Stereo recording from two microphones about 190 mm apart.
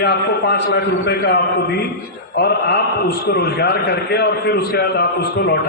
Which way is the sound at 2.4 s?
55° left (ahead or behind).